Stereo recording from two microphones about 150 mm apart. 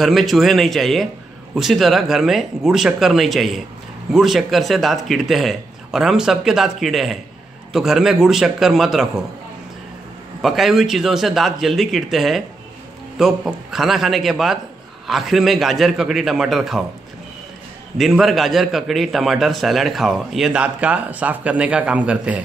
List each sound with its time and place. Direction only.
0.0 s a man's voice: centre (ahead or behind)
10.4 s a man's voice: centre (ahead or behind)
17.9 s a man's voice: centre (ahead or behind)